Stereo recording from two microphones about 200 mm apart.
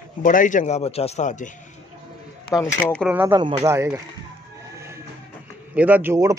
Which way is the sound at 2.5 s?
10° left (ahead or behind).